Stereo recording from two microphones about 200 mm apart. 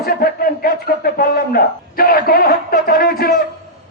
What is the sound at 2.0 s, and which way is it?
Music, 45° left (ahead or behind).